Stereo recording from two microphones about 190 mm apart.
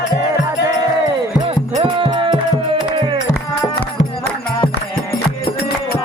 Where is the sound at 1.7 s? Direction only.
30° right (ahead or behind).